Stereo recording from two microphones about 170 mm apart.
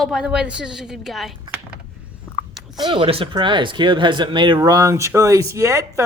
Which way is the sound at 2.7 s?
25° right (ahead or behind).